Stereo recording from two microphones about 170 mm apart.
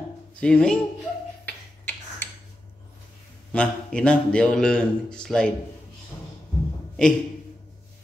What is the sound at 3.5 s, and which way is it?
A man's voice, 5° left (ahead or behind).